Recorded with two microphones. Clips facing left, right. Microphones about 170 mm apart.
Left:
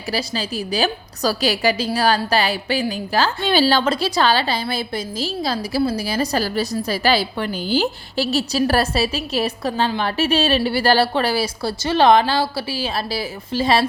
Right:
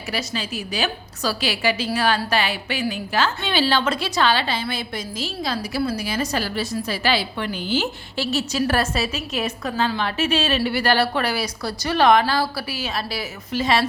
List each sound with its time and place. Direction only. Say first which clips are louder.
0.1 s a woman's voice: left 3 dB; 35° left (ahead or behind)